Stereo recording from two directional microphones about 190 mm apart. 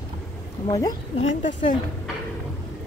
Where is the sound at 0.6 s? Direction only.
20° left (ahead or behind).